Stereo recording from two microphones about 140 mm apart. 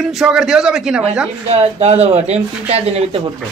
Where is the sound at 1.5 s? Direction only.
50° right (ahead or behind).